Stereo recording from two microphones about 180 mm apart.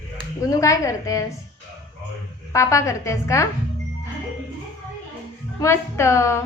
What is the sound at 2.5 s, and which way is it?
A woman's voice, 15° left (ahead or behind).